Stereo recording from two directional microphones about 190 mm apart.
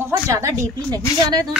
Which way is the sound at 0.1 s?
15° right (ahead or behind).